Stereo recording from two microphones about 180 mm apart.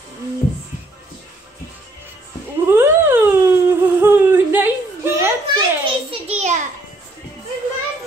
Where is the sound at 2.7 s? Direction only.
10° right (ahead or behind).